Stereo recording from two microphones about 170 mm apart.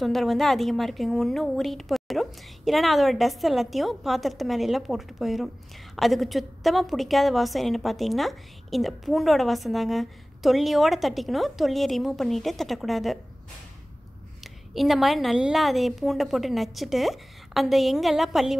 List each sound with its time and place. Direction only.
0.0 s a woman's voice: centre (ahead or behind)
14.4 s a woman's voice: centre (ahead or behind)